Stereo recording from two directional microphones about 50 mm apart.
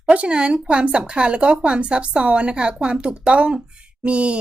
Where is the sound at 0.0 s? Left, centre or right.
Right.